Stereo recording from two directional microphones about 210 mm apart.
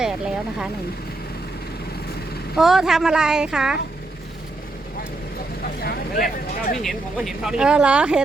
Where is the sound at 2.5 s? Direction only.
Centre (ahead or behind).